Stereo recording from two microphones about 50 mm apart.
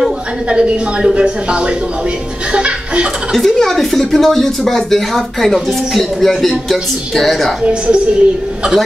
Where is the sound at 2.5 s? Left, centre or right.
Right.